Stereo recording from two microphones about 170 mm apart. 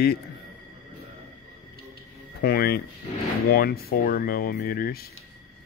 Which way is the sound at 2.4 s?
65° left (ahead or behind).